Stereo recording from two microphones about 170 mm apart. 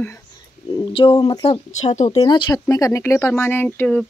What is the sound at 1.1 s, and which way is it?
Speech, 25° left (ahead or behind).